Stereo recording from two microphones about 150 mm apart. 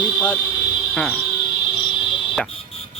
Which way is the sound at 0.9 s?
5° left (ahead or behind).